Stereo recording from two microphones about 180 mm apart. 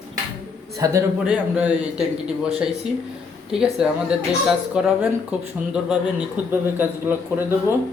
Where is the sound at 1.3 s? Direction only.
5° right (ahead or behind).